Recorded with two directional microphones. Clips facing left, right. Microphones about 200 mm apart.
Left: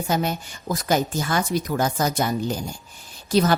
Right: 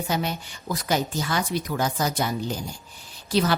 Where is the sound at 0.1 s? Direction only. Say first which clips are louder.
Left 5 dB; 45° left (ahead or behind).